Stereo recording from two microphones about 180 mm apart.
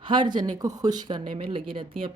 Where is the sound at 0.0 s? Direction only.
25° right (ahead or behind).